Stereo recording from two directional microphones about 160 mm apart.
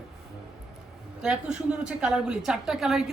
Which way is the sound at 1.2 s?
5° right (ahead or behind).